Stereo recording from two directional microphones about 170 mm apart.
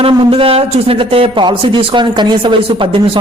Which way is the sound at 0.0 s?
35° right (ahead or behind).